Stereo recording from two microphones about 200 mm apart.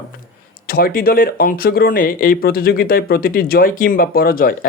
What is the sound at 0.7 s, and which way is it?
Speech, 50° left (ahead or behind).